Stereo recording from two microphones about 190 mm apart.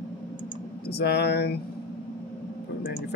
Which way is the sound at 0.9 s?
60° left (ahead or behind).